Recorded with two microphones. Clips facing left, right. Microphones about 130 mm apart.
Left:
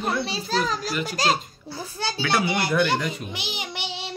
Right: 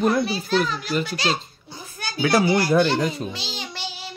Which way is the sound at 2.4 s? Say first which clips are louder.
Right 5 dB; 20° left (ahead or behind).